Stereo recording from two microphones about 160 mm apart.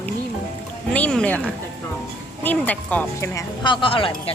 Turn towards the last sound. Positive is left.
turn(degrees=35)  # may be behind; listen again after turning